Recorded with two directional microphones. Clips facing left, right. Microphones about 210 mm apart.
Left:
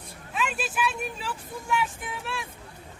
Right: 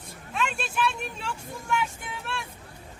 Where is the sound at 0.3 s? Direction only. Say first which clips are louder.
Even; 5° left (ahead or behind).